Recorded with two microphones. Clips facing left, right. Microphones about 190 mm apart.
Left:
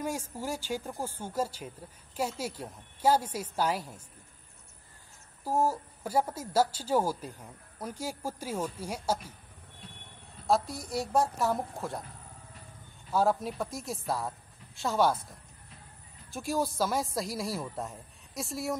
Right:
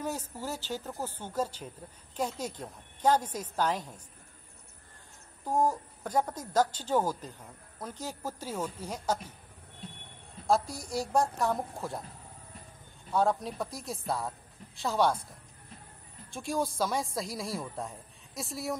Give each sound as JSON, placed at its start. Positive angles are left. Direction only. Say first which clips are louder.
{"t": 0.0, "sound": "a woman's voice", "louder": "left 1 dB", "side_deg": 10}
{"t": 5.4, "sound": "a woman's voice", "louder": "even", "side_deg": 10}
{"t": 10.4, "sound": "a woman's voice", "louder": "even", "side_deg": 0}
{"t": 13.1, "sound": "a woman's voice", "louder": "left 1 dB", "side_deg": 5}
{"t": 16.3, "sound": "a woman's voice", "louder": "left 1 dB", "side_deg": 5}